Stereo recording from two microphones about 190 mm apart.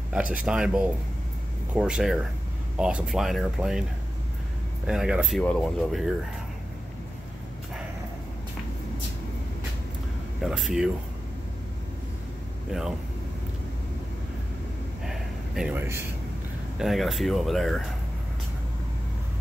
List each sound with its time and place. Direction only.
0.1 s speech: 5° right (ahead or behind)
4.8 s speech: 5° right (ahead or behind)
10.4 s speech: centre (ahead or behind)
15.0 s a sound: 5° right (ahead or behind)
16.7 s speech: centre (ahead or behind)